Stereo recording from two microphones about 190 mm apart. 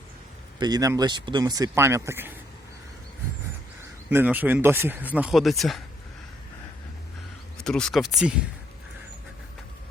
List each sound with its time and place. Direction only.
0.6 s speech: 20° right (ahead or behind)
4.1 s speech: 10° right (ahead or behind)
7.6 s speech: 5° left (ahead or behind)